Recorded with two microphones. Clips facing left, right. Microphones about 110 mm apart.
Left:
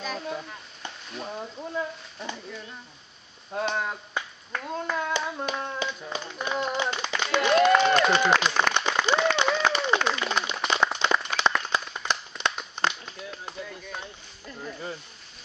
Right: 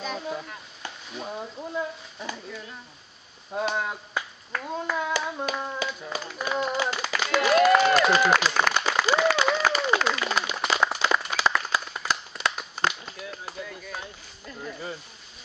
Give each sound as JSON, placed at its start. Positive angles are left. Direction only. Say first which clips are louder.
{"t": 0.0, "sound": "frying", "louder": "right 1 dB", "side_deg": 0}
{"t": 3.5, "sound": "speech", "louder": "right 1 dB", "side_deg": -5}
{"t": 7.2, "sound": "a sound", "louder": "right 1 dB", "side_deg": -5}